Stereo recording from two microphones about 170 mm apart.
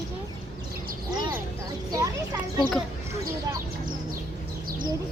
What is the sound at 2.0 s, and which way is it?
Speech, 25° right (ahead or behind).